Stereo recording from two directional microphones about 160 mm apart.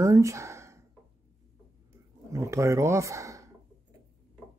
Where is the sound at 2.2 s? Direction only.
20° right (ahead or behind).